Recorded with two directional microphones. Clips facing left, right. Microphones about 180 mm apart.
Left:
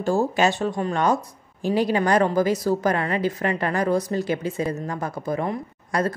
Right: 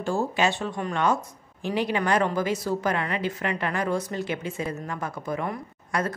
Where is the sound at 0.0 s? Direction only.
40° left (ahead or behind).